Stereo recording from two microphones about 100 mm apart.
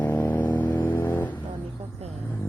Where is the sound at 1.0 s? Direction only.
20° left (ahead or behind).